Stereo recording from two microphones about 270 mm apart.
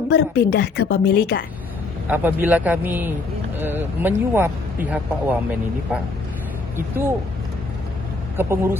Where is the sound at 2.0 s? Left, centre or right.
Centre.